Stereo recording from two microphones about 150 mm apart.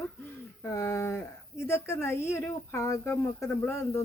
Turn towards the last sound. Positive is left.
turn(degrees=15)  # may be behind; listen again after turning